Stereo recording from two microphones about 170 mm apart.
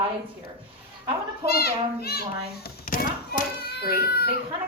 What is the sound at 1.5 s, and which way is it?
A child's voice, 65° left (ahead or behind).